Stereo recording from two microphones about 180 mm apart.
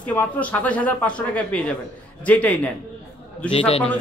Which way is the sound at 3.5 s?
30° left (ahead or behind).